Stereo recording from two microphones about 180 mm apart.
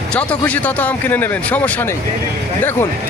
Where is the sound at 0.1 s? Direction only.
5° left (ahead or behind).